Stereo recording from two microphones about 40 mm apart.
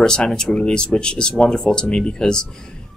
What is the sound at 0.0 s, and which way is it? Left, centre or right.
Speech, centre.